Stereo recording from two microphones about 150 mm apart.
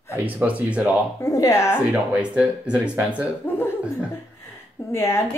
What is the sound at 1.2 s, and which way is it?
Speech, 20° left (ahead or behind).